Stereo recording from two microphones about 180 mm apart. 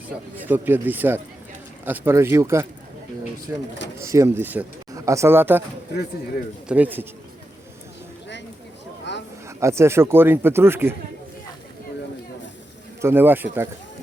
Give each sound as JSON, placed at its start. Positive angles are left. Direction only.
{"t": 0.3, "sound": "speech", "side_deg": -10}
{"t": 6.7, "sound": "speech", "side_deg": -10}
{"t": 9.1, "sound": "a sound", "side_deg": 80}
{"t": 9.5, "sound": "speech", "side_deg": -15}
{"t": 13.0, "sound": "speech", "side_deg": -10}